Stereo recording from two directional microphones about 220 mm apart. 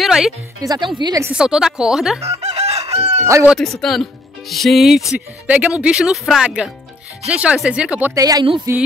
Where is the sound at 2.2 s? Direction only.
30° right (ahead or behind).